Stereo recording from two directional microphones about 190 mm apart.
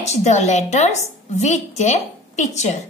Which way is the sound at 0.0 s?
35° left (ahead or behind).